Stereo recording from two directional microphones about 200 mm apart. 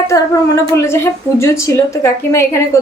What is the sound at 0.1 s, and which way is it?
A woman's voice, 15° left (ahead or behind).